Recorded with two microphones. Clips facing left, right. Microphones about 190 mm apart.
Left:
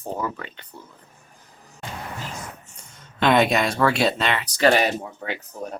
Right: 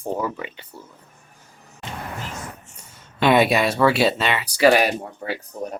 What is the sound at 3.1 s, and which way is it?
Speech, 10° right (ahead or behind).